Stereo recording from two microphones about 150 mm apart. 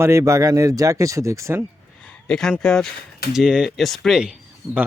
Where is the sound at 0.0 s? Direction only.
20° right (ahead or behind).